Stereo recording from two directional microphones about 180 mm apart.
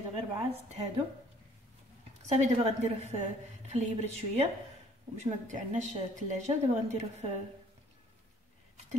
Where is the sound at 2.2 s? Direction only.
40° right (ahead or behind).